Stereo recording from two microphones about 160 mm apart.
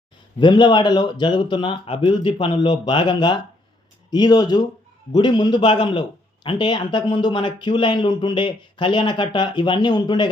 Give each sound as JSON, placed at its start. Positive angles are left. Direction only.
{"t": 0.3, "sound": "a man's voice", "side_deg": 30}